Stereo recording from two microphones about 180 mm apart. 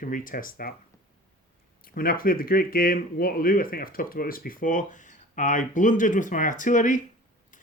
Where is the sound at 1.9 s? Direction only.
55° left (ahead or behind).